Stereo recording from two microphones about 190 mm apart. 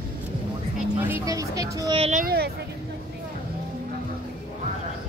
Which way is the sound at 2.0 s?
35° right (ahead or behind).